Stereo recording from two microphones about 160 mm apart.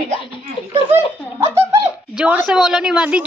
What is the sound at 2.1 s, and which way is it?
A woman's voice, 5° right (ahead or behind).